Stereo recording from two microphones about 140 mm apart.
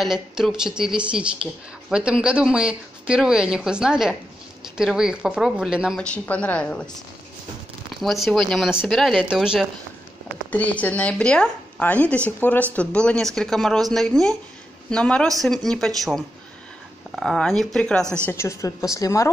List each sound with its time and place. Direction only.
0.0 s speech: 5° right (ahead or behind)
5.9 s speech: 10° left (ahead or behind)
8.0 s speech: centre (ahead or behind)
10.5 s speech: 10° left (ahead or behind)
18.2 s a woman's voice: 20° left (ahead or behind)